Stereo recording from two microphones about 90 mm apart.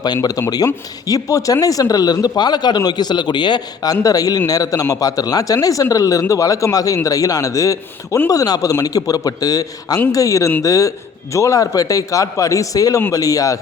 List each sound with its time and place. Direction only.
0.0 s speech: 45° left (ahead or behind)
4.0 s speech: 45° left (ahead or behind)